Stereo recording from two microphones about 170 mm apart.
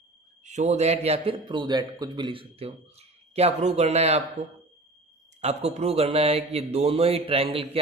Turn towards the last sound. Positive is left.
turn(degrees=-35)  # may be behind; listen again after turning